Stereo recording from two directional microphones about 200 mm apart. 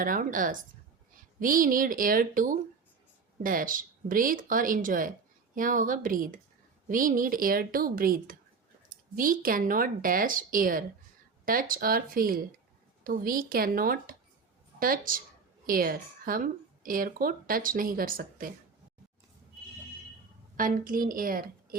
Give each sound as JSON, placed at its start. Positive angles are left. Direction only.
{"t": 0.0, "sound": "speech", "side_deg": -45}
{"t": 20.6, "sound": "speech", "side_deg": -45}